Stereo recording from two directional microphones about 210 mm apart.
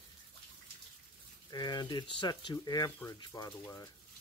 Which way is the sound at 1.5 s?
20° left (ahead or behind).